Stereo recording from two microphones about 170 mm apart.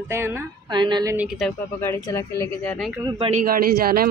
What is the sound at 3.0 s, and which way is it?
Speech, 25° right (ahead or behind).